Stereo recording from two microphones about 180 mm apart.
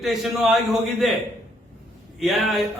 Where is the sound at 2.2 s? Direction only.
Centre (ahead or behind).